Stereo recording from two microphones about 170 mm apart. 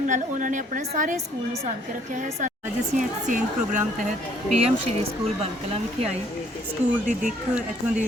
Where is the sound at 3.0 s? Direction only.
50° right (ahead or behind).